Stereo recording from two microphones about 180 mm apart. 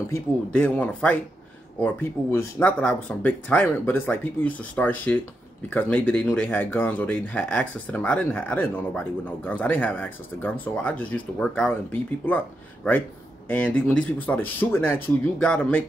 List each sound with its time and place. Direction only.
0.1 s speech: 10° left (ahead or behind)
13.5 s speech: 10° left (ahead or behind)